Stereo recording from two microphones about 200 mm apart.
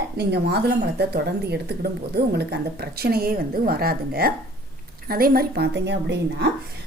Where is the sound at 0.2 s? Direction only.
55° right (ahead or behind).